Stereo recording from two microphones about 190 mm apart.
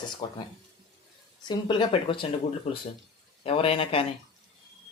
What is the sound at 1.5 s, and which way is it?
Speech, 25° left (ahead or behind).